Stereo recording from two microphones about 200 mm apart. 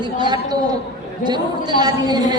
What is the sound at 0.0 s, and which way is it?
A man's voice, 20° right (ahead or behind).